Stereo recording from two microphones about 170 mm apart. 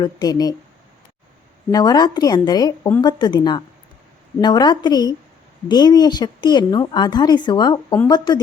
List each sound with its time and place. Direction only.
0.0 s speech: 20° left (ahead or behind)
1.7 s speech: 25° left (ahead or behind)